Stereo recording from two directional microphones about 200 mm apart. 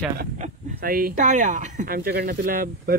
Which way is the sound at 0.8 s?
45° right (ahead or behind).